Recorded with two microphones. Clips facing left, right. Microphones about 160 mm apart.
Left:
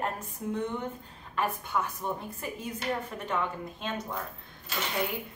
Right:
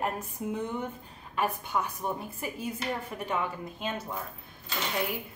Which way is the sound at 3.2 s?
10° right (ahead or behind).